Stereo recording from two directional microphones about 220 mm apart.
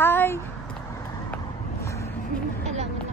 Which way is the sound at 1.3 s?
15° left (ahead or behind).